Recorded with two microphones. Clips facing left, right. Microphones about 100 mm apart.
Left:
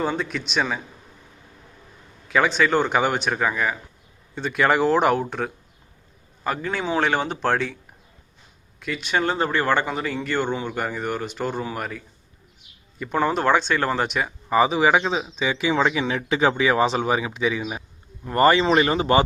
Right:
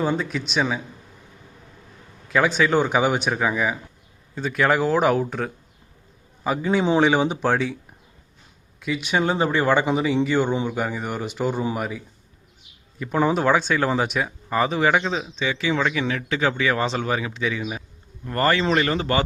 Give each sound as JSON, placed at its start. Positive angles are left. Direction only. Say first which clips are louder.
{"t": 0.0, "sound": "speech", "louder": "right 2 dB", "side_deg": -5}
{"t": 2.2, "sound": "a sound", "louder": "even", "side_deg": 0}
{"t": 2.6, "sound": "a man's voice", "louder": "right 1 dB", "side_deg": -5}
{"t": 8.8, "sound": "speech", "louder": "right 1 dB", "side_deg": -10}
{"t": 15.4, "sound": "speech", "louder": "left 2 dB", "side_deg": 15}